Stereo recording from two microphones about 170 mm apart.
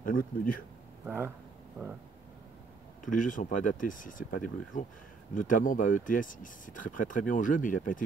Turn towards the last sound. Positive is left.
turn(degrees=50)  # may be behind; listen again after turning